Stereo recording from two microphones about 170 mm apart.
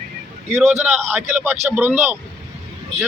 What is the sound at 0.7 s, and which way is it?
Speech, 40° right (ahead or behind).